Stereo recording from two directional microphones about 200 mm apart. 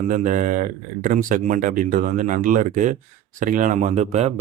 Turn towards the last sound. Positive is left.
turn(degrees=-35)  # may be behind; listen again after turning